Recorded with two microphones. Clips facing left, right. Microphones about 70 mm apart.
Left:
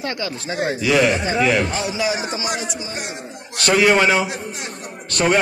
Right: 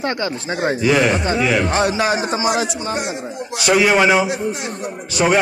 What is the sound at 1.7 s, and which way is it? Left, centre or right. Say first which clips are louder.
Speech: right 5 dB; right.